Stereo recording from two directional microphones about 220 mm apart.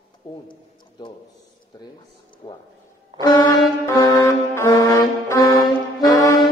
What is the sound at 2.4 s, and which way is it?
Speech, 20° left (ahead or behind).